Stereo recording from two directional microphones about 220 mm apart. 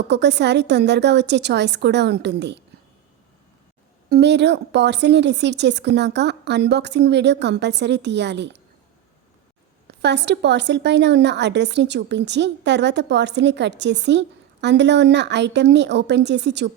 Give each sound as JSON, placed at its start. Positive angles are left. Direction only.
{"t": 0.1, "sound": "speech", "side_deg": -50}
{"t": 4.1, "sound": "speech", "side_deg": -50}
{"t": 9.8, "sound": "speech", "side_deg": -50}